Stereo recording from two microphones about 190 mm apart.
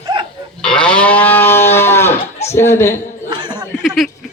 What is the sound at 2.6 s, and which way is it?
Speech, 15° left (ahead or behind).